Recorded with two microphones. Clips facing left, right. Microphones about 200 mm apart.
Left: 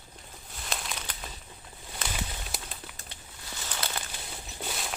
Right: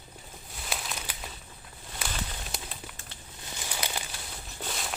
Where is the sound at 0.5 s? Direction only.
5° right (ahead or behind).